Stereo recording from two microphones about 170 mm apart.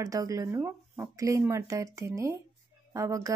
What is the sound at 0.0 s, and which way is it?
Speech, 20° right (ahead or behind).